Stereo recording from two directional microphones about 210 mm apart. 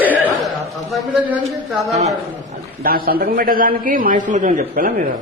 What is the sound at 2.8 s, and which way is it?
A man's voice, 45° right (ahead or behind).